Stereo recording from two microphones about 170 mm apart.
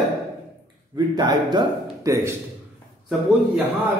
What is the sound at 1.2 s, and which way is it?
Speech, 25° right (ahead or behind).